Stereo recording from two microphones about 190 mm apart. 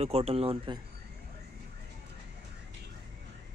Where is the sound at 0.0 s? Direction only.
30° right (ahead or behind).